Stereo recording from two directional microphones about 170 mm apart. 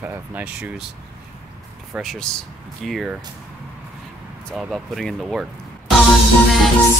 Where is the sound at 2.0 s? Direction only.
5° left (ahead or behind).